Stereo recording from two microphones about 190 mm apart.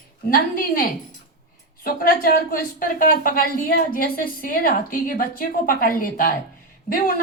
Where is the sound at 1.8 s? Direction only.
50° left (ahead or behind).